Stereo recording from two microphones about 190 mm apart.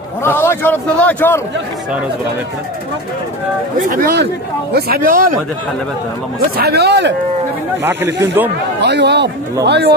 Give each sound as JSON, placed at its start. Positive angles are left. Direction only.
{"t": 0.2, "sound": "a man's voice", "side_deg": 15}
{"t": 3.9, "sound": "speech", "side_deg": -50}
{"t": 6.5, "sound": "speech", "side_deg": -55}
{"t": 7.8, "sound": "speech", "side_deg": -10}
{"t": 8.8, "sound": "speech", "side_deg": -65}